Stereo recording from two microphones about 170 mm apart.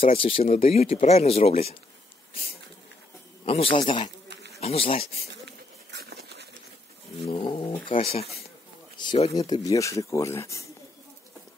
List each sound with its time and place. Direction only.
0.0 s speech: 35° left (ahead or behind)
3.4 s speech: 35° left (ahead or behind)
5.3 s a sound: 80° right
7.2 s speech: 30° left (ahead or behind)
9.4 s speech: 20° left (ahead or behind)